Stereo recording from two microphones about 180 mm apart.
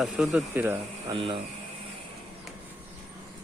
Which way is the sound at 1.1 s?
30° right (ahead or behind).